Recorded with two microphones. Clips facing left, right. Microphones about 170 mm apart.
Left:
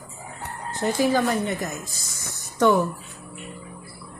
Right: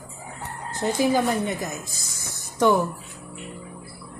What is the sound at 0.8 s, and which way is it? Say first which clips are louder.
Speech: even; 20° right (ahead or behind).